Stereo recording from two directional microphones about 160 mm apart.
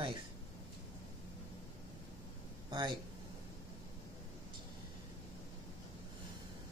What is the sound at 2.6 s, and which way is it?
Speech, 30° right (ahead or behind).